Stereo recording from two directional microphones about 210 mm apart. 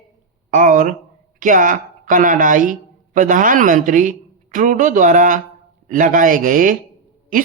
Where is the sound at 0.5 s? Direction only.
40° right (ahead or behind).